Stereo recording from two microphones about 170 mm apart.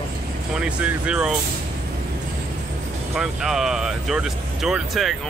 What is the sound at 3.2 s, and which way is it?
Speech, centre (ahead or behind).